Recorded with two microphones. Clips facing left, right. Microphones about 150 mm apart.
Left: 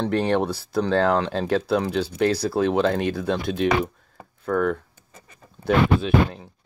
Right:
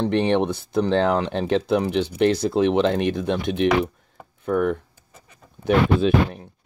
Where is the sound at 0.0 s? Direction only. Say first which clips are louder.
Right 2 dB; 20° right (ahead or behind).